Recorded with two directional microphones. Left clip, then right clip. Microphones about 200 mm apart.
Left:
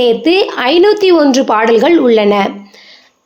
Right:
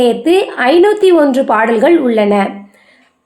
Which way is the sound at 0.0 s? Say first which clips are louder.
Left 1 dB; 35° left (ahead or behind).